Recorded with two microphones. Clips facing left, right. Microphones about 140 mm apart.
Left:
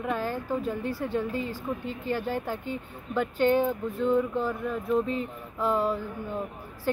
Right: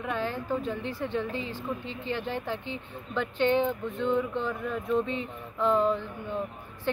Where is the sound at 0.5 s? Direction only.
10° left (ahead or behind).